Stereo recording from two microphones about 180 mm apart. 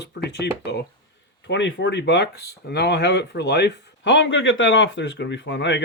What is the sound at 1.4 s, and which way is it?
Speech, 85° left.